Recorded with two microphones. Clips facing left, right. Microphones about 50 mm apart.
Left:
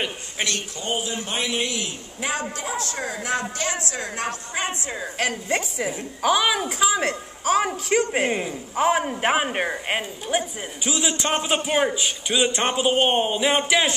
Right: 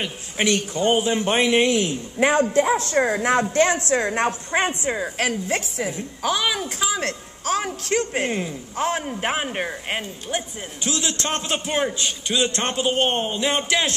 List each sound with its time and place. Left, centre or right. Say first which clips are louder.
0.4 s a man's voice: right 6 dB; centre
0.7 s a man's voice: right 8 dB; right
4.9 s a woman's voice: right 2 dB; centre
5.5 s a woman's voice: even; centre